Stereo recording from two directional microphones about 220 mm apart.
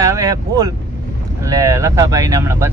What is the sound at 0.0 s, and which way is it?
Speech, 15° right (ahead or behind).